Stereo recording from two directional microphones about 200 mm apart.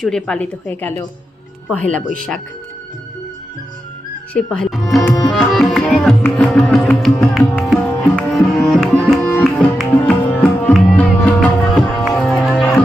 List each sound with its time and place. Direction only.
0.0 s a woman's voice: 5° left (ahead or behind)
4.4 s music: 5° left (ahead or behind)
4.9 s tabla: 15° left (ahead or behind)
5.3 s tabla: centre (ahead or behind)